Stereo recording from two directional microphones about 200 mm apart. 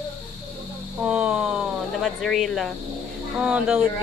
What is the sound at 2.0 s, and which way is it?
A woman's voice, centre (ahead or behind).